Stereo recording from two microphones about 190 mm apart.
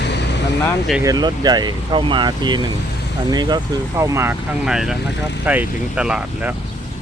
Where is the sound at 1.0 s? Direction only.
20° right (ahead or behind).